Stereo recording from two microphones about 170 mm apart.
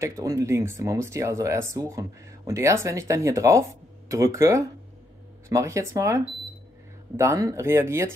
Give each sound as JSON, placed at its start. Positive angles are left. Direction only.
{"t": 0.0, "sound": "speech", "side_deg": -20}